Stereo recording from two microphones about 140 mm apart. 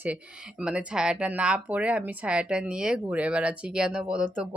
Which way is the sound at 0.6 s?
10° right (ahead or behind).